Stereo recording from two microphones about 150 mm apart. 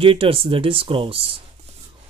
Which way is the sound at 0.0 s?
35° right (ahead or behind).